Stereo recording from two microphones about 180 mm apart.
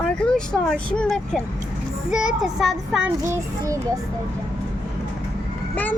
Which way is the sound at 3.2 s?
15° right (ahead or behind).